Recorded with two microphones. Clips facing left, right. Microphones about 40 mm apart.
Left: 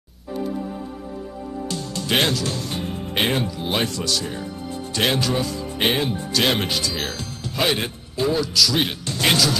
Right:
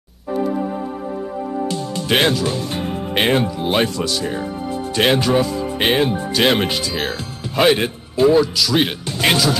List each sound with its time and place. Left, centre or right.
1.7 s music: centre
3.9 s speech: centre